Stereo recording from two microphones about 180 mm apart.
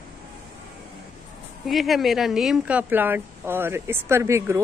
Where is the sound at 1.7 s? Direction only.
Centre (ahead or behind).